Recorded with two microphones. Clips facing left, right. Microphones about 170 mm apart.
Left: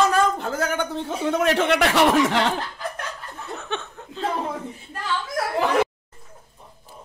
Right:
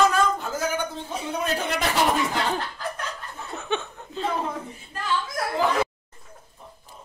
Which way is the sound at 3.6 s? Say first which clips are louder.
Right 6 dB; centre (ahead or behind).